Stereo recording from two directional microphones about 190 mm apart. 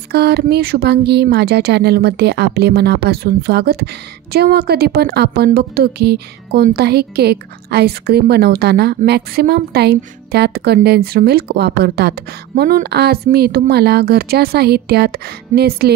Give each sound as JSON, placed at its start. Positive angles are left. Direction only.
{"t": 0.1, "sound": "speech", "side_deg": -55}